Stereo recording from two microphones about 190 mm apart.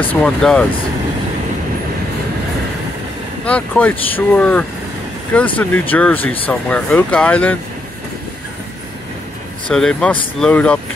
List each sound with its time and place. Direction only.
0.1 s speech: 5° left (ahead or behind)
3.4 s speech: 5° left (ahead or behind)
9.7 s speech: 5° left (ahead or behind)